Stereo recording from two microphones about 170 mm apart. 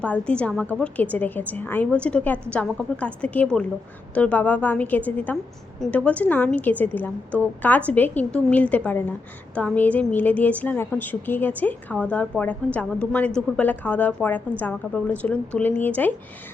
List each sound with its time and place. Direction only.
0.0 s a woman's voice: 5° left (ahead or behind)